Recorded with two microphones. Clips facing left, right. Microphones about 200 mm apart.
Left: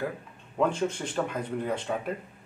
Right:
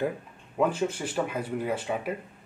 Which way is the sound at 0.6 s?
5° right (ahead or behind).